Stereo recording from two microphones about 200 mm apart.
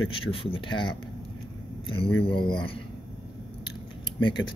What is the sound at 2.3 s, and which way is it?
Speech, 25° left (ahead or behind).